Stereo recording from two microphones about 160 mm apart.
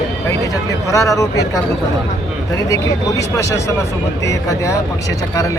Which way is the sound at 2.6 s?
20° left (ahead or behind).